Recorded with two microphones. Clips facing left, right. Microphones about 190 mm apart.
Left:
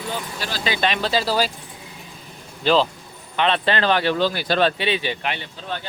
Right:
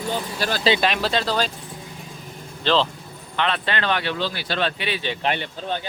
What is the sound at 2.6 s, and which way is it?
Speech, 10° left (ahead or behind).